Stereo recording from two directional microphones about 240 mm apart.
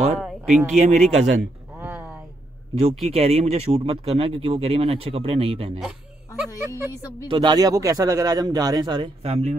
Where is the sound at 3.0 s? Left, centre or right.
Right.